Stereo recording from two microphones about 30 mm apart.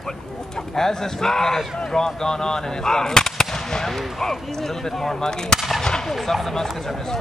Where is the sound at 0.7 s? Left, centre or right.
Centre.